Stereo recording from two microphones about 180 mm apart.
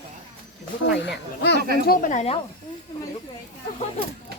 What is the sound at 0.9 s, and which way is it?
Speech, 75° left (ahead or behind).